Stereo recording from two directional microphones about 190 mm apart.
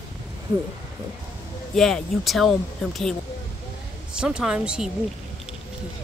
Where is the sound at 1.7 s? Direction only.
Centre (ahead or behind).